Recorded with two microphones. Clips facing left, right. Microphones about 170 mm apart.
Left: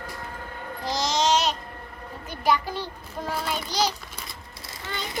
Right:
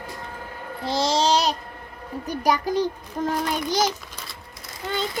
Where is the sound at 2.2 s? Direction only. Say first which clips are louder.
Right 2 dB; 40° right (ahead or behind).